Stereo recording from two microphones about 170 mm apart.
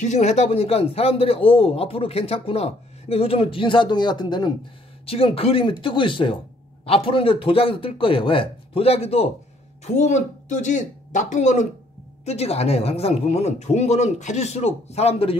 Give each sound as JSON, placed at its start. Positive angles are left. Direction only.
{"t": 0.0, "sound": "speech", "side_deg": 40}